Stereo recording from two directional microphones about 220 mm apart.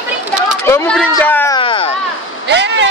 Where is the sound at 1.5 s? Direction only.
25° left (ahead or behind).